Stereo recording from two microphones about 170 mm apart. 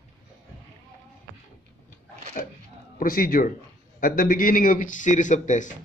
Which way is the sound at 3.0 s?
55° left (ahead or behind).